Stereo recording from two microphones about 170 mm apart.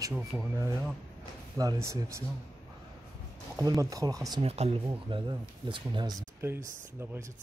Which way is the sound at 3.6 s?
20° right (ahead or behind).